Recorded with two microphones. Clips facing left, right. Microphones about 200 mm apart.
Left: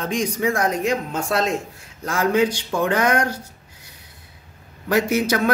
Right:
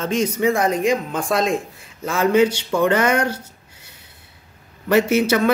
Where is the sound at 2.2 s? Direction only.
70° right (ahead or behind).